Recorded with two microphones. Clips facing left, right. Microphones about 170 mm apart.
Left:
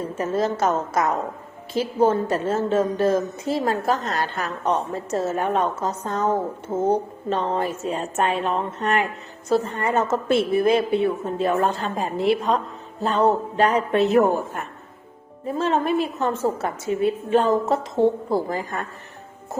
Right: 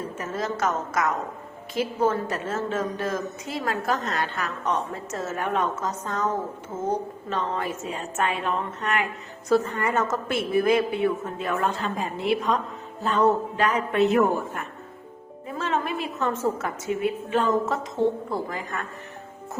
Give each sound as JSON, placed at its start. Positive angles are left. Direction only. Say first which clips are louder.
{"t": 0.2, "sound": "a woman's voice", "louder": "left 6 dB", "side_deg": 30}